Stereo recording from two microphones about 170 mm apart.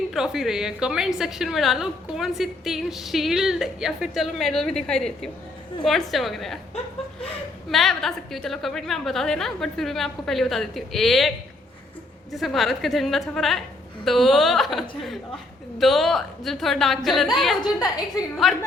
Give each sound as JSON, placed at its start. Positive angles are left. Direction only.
{"t": 0.1, "sound": "a woman's voice", "side_deg": 0}
{"t": 7.7, "sound": "a woman's voice", "side_deg": 0}
{"t": 17.6, "sound": "a woman's voice", "side_deg": 20}
{"t": 18.4, "sound": "a woman's voice", "side_deg": 0}